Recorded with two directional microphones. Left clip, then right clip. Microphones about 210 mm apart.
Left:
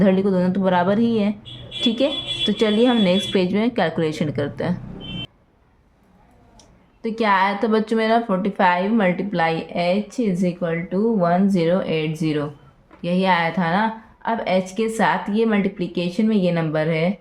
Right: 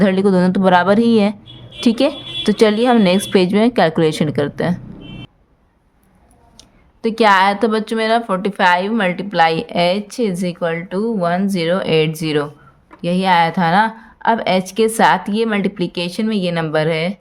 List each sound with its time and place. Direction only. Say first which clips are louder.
0.0 s speech: right 4 dB; 35° right (ahead or behind)
6.6 s speech: right 8 dB; 45° right (ahead or behind)
13.0 s speech: right 5 dB; 35° right (ahead or behind)